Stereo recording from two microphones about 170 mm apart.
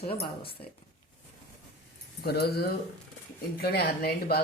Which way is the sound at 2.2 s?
70° left (ahead or behind).